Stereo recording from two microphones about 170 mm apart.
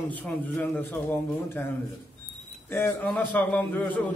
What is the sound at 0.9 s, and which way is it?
Speech, 10° left (ahead or behind).